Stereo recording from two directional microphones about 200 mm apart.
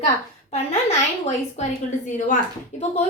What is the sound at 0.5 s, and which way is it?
A woman's voice, 30° left (ahead or behind).